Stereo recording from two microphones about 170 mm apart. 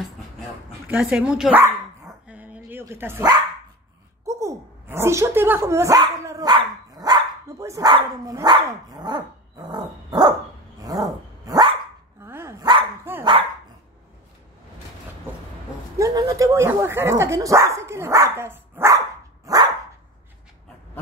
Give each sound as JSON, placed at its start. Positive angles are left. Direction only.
{"t": 0.8, "sound": "speech", "side_deg": -5}
{"t": 2.2, "sound": "dog", "side_deg": -10}
{"t": 4.3, "sound": "speech", "side_deg": -20}
{"t": 10.8, "sound": "dog", "side_deg": -20}
{"t": 16.0, "sound": "speech", "side_deg": -20}